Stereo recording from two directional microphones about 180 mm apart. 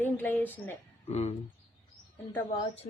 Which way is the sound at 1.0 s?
35° left (ahead or behind).